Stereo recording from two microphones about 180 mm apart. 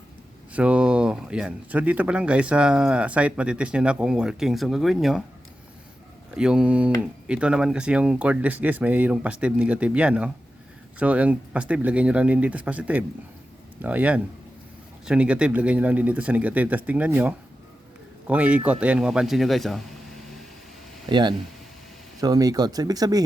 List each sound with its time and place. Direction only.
0.5 s speech: 5° right (ahead or behind)
6.3 s speech: 5° right (ahead or behind)
21.1 s speech: 25° right (ahead or behind)